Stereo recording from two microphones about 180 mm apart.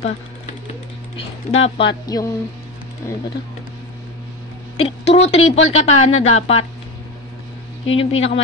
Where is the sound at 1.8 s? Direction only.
25° left (ahead or behind).